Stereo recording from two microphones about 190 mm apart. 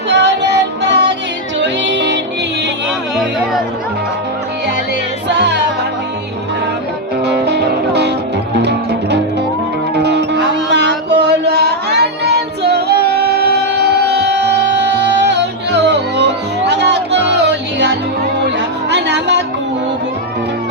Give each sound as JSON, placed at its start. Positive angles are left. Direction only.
{"t": 0.1, "sound": "music", "side_deg": -65}
{"t": 5.3, "sound": "music", "side_deg": -65}
{"t": 7.3, "sound": "music", "side_deg": -60}